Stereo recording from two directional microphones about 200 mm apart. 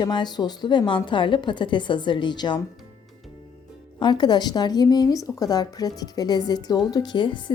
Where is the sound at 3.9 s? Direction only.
20° left (ahead or behind).